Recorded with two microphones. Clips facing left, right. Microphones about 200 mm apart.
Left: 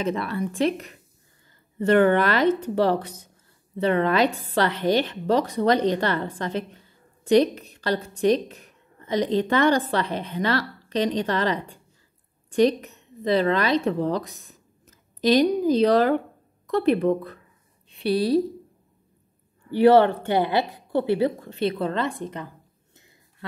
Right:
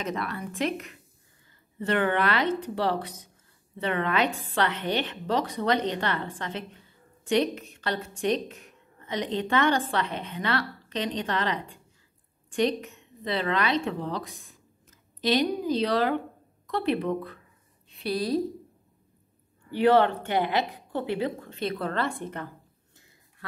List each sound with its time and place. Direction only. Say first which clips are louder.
0.0 s a woman's voice: left 6 dB; 30° left (ahead or behind)
1.8 s a woman's voice: left 7 dB; 45° left (ahead or behind)
17.8 s a woman's voice: left 6 dB; 30° left (ahead or behind)
20.2 s a woman's voice: left 4 dB; 35° left (ahead or behind); by 22.5 s 15° left (ahead or behind)